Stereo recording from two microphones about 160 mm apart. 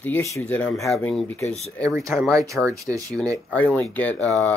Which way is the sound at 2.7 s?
20° right (ahead or behind).